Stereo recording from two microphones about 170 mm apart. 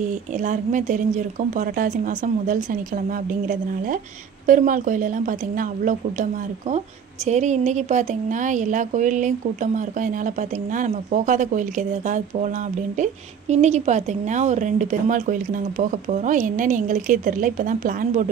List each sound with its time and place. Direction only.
0.0 s speech: 45° right (ahead or behind)
7.2 s speech: 45° right (ahead or behind)